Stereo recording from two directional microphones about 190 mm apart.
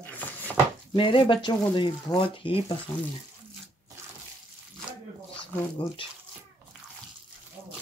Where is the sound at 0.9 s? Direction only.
25° left (ahead or behind).